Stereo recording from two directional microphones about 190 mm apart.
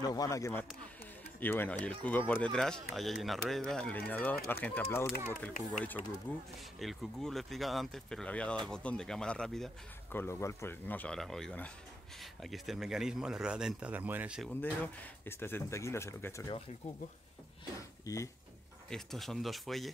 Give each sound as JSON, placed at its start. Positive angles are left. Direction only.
{"t": 0.0, "sound": "speech", "side_deg": 20}
{"t": 10.1, "sound": "speech", "side_deg": 15}
{"t": 15.2, "sound": "speech", "side_deg": 10}
{"t": 17.7, "sound": "a sound", "side_deg": 15}
{"t": 18.9, "sound": "speech", "side_deg": 0}